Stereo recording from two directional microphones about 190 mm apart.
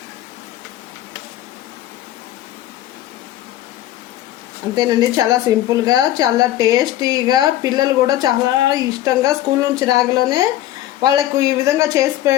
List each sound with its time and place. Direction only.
4.7 s speech: 20° right (ahead or behind)